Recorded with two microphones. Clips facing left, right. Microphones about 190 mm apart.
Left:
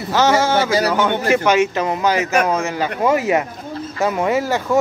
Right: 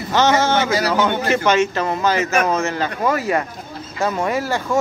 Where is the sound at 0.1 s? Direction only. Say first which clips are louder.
Left 1 dB; 5° left (ahead or behind).